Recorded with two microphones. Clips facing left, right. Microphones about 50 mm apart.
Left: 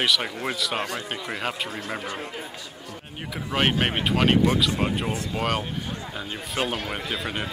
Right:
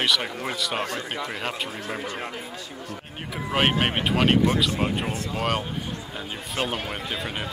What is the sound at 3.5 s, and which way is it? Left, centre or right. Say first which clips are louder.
Speech: right 1 dB; centre.